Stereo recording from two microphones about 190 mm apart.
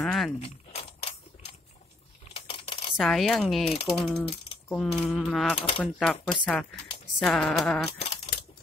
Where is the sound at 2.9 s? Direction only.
Centre (ahead or behind).